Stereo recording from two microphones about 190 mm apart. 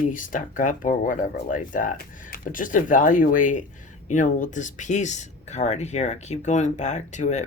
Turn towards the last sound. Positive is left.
turn(degrees=40)  # may be behind; listen again after turning